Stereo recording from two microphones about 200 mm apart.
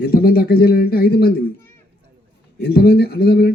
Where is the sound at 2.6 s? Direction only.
50° left (ahead or behind).